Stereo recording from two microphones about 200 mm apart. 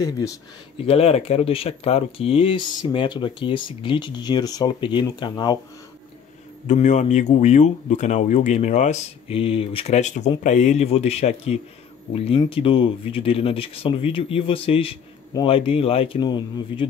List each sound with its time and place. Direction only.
0.8 s speech: 30° left (ahead or behind)
6.7 s speech: 35° left (ahead or behind)